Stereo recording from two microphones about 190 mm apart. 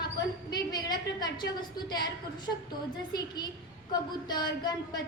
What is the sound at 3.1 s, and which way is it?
A woman's voice, 20° left (ahead or behind).